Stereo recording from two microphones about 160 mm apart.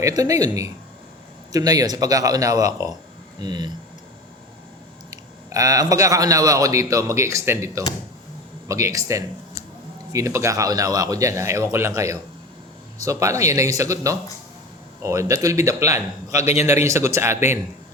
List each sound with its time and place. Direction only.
0.0 s speech: 20° right (ahead or behind)
5.1 s speech: 20° right (ahead or behind)
16.4 s a man's voice: 45° left (ahead or behind)
16.6 s speech: 15° right (ahead or behind)